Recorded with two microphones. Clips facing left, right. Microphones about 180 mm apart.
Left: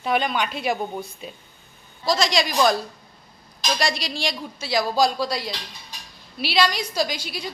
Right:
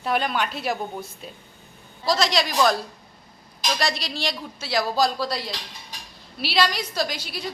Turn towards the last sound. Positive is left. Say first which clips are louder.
# left 2 dB
turn(degrees=0)  # may be behind; listen again after turning